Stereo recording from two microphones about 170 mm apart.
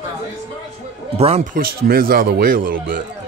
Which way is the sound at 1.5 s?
60° right (ahead or behind).